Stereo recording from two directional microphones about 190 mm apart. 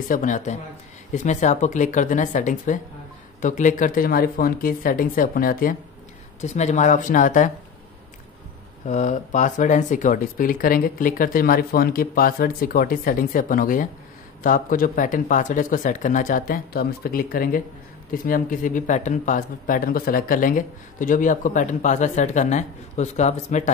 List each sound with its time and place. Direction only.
0.1 s speech: 40° left (ahead or behind)
6.4 s speech: 40° left (ahead or behind)
8.8 s speech: 40° left (ahead or behind)